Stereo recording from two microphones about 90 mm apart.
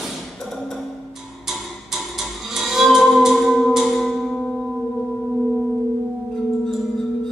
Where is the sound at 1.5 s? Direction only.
5° right (ahead or behind).